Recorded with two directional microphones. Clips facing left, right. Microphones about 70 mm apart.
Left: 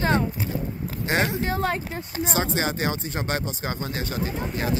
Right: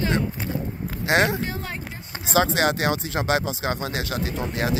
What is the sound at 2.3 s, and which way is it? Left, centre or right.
Speech, right.